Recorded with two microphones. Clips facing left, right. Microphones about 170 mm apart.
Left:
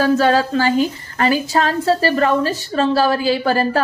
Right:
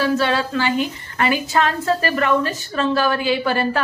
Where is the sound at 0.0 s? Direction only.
40° left (ahead or behind).